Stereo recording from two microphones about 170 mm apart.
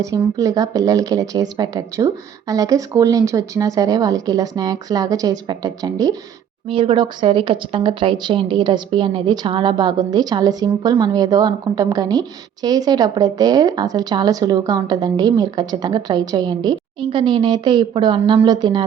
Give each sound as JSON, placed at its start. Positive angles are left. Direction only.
{"t": 0.0, "sound": "speech", "side_deg": -20}